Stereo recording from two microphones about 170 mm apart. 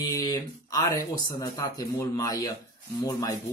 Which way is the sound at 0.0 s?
25° left (ahead or behind).